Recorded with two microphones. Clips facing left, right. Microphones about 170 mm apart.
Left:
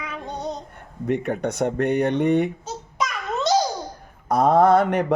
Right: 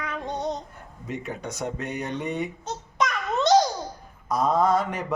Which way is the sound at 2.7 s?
5° left (ahead or behind).